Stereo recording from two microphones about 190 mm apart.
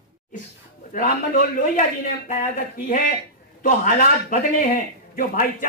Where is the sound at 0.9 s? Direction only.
45° left (ahead or behind).